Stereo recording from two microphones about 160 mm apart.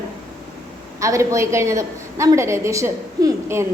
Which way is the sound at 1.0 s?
20° right (ahead or behind).